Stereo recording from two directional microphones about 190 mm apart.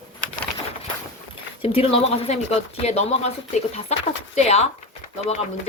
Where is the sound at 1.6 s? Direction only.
30° left (ahead or behind).